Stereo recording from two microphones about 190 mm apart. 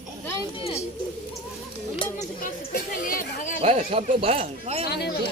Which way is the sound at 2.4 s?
50° left (ahead or behind).